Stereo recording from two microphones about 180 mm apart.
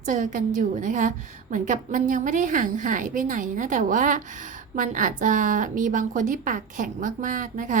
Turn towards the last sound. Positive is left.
turn(degrees=-45)  # may be behind; listen again after turning